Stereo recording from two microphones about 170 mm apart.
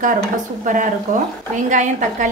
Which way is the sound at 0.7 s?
45° right (ahead or behind).